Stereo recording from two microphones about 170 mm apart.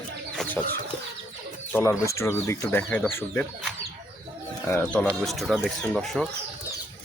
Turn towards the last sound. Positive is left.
turn(degrees=0)  # may be behind; listen again after turning